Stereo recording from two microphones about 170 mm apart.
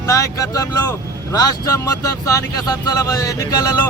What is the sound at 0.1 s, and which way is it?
Speech, 20° left (ahead or behind).